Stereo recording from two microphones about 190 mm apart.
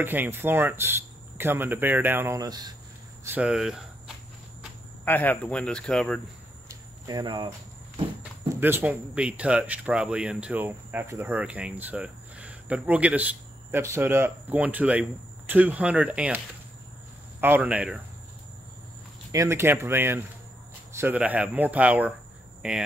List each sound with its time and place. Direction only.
0.0 s speech: 10° right (ahead or behind)
3.3 s speech: 5° right (ahead or behind)
5.0 s speech: 10° left (ahead or behind)
6.7 s cricket: 20° right (ahead or behind)
8.2 s speech: 10° right (ahead or behind)
17.4 s speech: 10° right (ahead or behind)
19.3 s speech: 15° right (ahead or behind)